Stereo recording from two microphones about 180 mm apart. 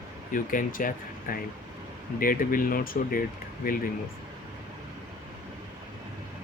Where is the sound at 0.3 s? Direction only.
50° left (ahead or behind).